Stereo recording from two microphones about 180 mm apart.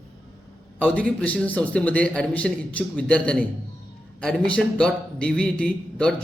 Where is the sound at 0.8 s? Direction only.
10° left (ahead or behind).